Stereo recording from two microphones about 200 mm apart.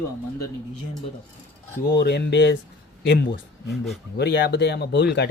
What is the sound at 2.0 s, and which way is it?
Speech, 55° left (ahead or behind).